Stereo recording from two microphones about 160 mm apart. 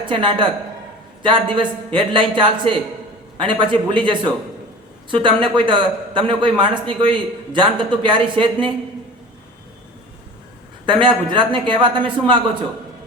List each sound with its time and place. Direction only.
0.0 s a man's voice: 30° right (ahead or behind)
10.8 s a man's voice: 30° right (ahead or behind)